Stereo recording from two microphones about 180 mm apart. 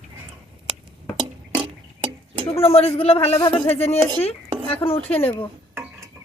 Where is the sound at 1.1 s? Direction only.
25° right (ahead or behind).